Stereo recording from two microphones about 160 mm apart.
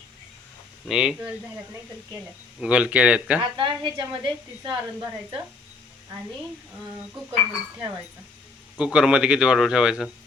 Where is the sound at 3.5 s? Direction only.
30° right (ahead or behind).